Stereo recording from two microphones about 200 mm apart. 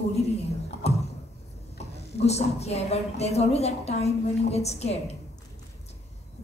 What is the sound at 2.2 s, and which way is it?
A woman's voice, 30° left (ahead or behind).